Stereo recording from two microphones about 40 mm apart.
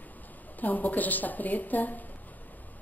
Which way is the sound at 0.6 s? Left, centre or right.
Left.